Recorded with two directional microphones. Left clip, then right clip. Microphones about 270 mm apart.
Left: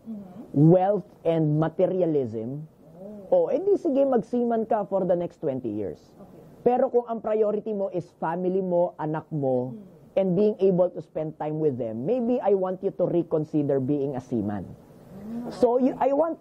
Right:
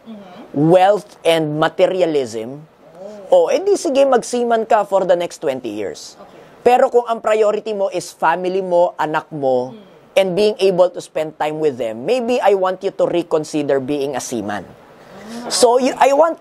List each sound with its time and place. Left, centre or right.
0.6 s a woman's voice: centre
8.6 s speech: right
8.9 s a woman's voice: centre
9.4 s speech: right
10.1 s a woman's voice: centre